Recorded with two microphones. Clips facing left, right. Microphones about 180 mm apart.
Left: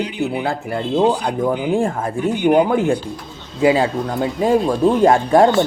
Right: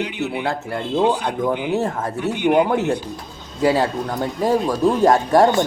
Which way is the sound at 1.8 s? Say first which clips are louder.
Left 3 dB; 10° left (ahead or behind).